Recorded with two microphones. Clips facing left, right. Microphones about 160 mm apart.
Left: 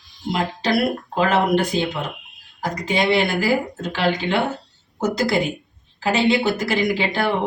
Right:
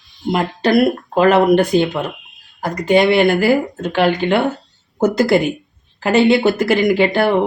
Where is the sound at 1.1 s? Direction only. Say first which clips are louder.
Right 7 dB; 55° right (ahead or behind).